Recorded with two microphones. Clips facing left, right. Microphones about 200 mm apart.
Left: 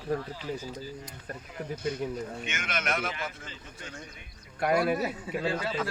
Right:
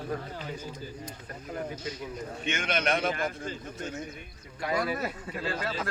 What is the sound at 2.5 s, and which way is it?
Speech, 30° right (ahead or behind).